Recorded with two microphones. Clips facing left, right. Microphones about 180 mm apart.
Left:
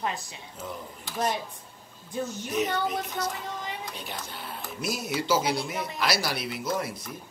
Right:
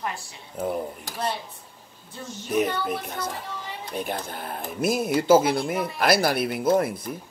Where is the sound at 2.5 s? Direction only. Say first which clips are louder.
Right 4 dB; 55° right (ahead or behind).